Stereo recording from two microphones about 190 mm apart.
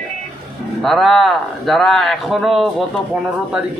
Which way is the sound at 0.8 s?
Centre (ahead or behind).